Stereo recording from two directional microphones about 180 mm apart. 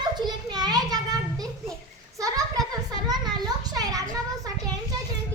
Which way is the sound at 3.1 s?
20° right (ahead or behind).